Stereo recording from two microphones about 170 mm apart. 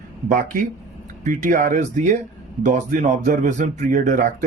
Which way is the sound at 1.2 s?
45° right (ahead or behind).